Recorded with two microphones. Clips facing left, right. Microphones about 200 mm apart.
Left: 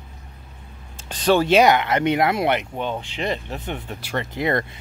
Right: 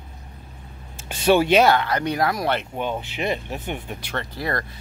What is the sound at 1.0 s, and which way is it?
Speech, 10° right (ahead or behind).